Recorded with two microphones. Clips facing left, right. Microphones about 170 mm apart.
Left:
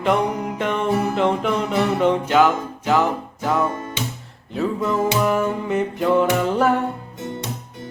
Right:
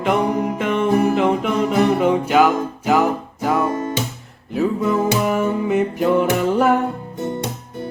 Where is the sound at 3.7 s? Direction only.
45° right (ahead or behind).